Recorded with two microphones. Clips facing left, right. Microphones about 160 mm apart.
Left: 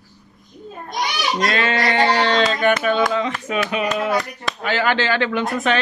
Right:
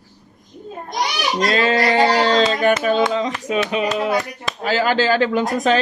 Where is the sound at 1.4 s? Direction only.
35° right (ahead or behind).